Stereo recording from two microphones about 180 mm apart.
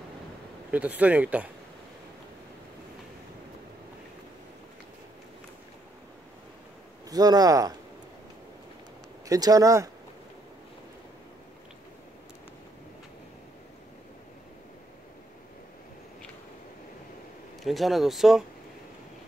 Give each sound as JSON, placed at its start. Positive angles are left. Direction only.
{"t": 0.7, "sound": "speech", "side_deg": -10}
{"t": 7.1, "sound": "speech", "side_deg": -20}
{"t": 9.3, "sound": "speech", "side_deg": -20}
{"t": 17.6, "sound": "speech", "side_deg": 0}